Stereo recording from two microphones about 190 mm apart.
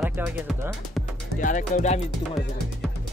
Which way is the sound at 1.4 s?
40° left (ahead or behind).